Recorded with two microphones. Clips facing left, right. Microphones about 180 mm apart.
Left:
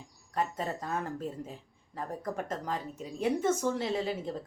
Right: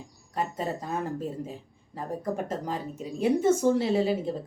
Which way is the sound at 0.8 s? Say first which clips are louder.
Right 3 dB; 10° right (ahead or behind).